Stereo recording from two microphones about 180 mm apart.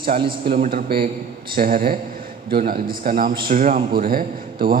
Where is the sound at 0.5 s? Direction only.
55° right (ahead or behind).